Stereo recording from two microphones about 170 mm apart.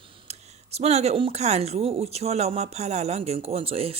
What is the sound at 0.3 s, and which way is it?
Speech, 40° right (ahead or behind).